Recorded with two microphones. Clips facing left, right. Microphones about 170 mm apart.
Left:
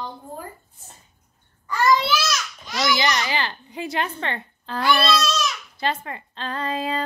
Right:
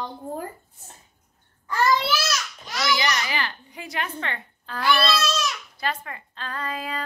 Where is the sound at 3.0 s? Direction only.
30° left (ahead or behind).